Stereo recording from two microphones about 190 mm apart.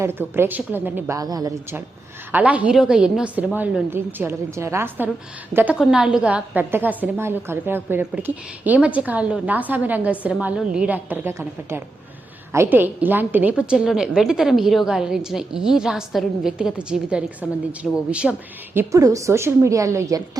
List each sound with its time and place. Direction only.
0.0 s a woman's voice: 10° right (ahead or behind)
2.3 s a woman's voice: 5° right (ahead or behind)